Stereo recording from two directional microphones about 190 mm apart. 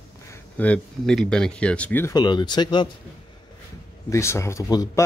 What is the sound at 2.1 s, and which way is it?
Speech, 20° left (ahead or behind).